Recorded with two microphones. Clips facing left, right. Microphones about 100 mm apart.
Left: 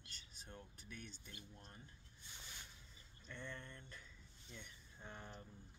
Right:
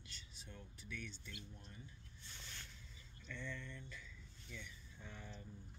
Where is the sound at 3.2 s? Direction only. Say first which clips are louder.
Right 2 dB; 50° left (ahead or behind).